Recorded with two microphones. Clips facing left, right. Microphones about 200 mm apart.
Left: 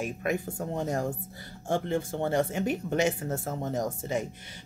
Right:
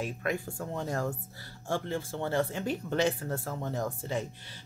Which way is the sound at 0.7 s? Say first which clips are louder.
Left 3 dB; 20° left (ahead or behind).